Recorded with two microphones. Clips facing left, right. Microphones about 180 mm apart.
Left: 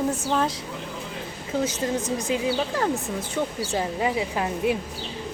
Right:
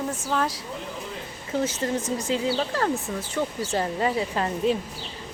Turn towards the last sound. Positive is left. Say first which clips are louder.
# even
turn(degrees=10)  # may be behind; listen again after turning